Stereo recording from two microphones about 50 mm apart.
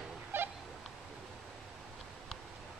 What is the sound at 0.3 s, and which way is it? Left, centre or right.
Goose, right.